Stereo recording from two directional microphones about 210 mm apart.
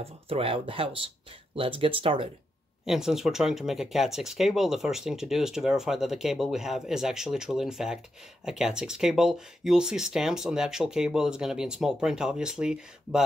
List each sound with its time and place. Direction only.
0.0 s speech: 25° right (ahead or behind)
2.8 s speech: centre (ahead or behind)